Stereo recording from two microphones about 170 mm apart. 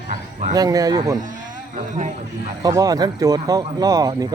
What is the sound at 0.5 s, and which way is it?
Speech, 20° right (ahead or behind).